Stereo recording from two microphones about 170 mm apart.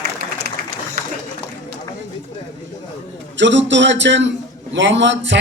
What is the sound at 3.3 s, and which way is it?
A man's voice, 90° right.